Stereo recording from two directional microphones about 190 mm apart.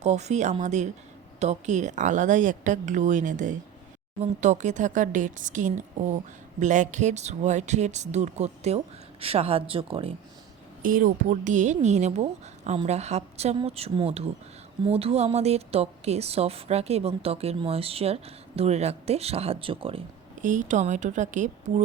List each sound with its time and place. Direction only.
0.0 s a woman's voice: 35° right (ahead or behind)
10.8 s a woman's voice: 45° right (ahead or behind); by 20.1 s 30° right (ahead or behind)
20.4 s a woman's voice: 45° right (ahead or behind)